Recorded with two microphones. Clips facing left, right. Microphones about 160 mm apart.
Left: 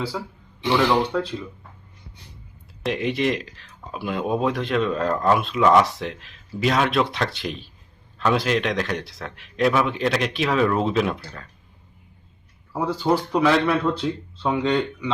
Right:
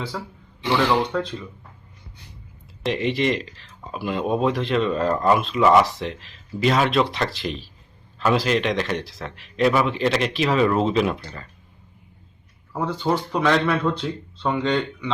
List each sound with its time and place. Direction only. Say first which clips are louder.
0.1 s speech: left 1 dB; 5° left (ahead or behind)
2.8 s speech: right 1 dB; centre (ahead or behind)
12.7 s speech: left 2 dB; 5° left (ahead or behind)